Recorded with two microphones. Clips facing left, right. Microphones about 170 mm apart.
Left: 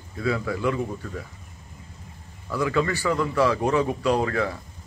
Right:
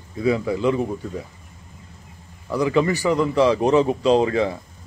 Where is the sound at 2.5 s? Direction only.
20° right (ahead or behind).